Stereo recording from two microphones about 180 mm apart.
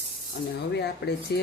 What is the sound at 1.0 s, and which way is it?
Speech, 65° left (ahead or behind).